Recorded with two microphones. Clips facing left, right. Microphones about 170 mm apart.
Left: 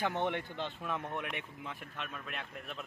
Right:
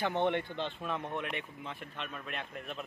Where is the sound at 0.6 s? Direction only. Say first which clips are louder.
Right 2 dB; 20° right (ahead or behind).